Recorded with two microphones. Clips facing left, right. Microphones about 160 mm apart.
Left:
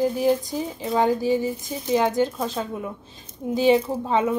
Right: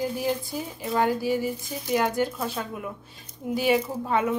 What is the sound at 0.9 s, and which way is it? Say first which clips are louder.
A woman's voice: left 3 dB; 15° left (ahead or behind).